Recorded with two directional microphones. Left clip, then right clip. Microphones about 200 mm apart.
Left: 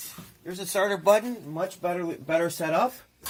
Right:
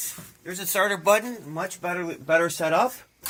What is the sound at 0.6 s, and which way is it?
Speech, 10° left (ahead or behind).